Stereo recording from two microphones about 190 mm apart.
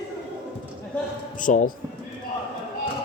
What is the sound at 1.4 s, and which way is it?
Music, 45° left (ahead or behind).